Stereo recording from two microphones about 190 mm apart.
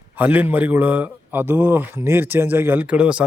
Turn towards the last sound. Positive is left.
turn(degrees=-5)  # may be behind; listen again after turning